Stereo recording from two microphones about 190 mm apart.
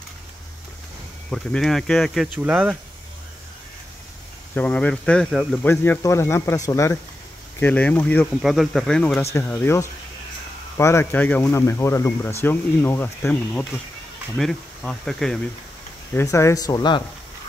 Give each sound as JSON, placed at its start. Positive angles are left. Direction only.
{"t": 1.3, "sound": "speech", "side_deg": 0}
{"t": 4.6, "sound": "speech", "side_deg": 5}
{"t": 5.7, "sound": "speech", "side_deg": 15}
{"t": 8.4, "sound": "speech", "side_deg": 0}
{"t": 16.2, "sound": "speech", "side_deg": 15}